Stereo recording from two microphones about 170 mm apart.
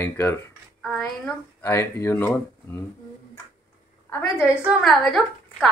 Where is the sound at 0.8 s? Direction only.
Centre (ahead or behind).